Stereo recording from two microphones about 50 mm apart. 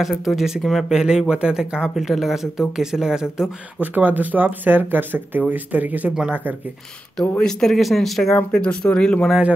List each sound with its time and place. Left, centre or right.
0.2 s speech: centre
2.0 s speech: centre
3.8 s speech: right
7.2 s speech: centre
8.5 s speech: centre